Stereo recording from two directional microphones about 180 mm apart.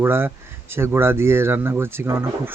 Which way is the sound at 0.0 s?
10° right (ahead or behind).